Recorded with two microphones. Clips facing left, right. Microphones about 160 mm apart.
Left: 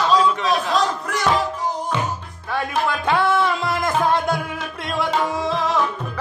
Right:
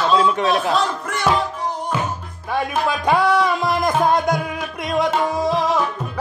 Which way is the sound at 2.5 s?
20° right (ahead or behind).